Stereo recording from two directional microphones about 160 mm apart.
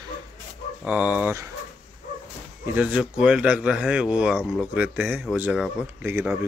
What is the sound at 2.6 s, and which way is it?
Speech, 10° right (ahead or behind).